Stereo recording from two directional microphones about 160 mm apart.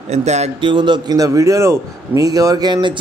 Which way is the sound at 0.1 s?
45° right (ahead or behind).